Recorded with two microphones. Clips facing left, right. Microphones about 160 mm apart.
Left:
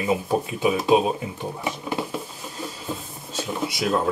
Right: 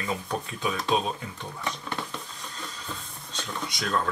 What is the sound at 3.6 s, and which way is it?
Speech, 5° left (ahead or behind).